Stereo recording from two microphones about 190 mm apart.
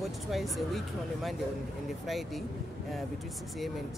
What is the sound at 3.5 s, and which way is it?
Speech, centre (ahead or behind).